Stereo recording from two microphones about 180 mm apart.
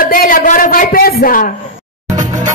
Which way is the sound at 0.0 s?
50° left (ahead or behind).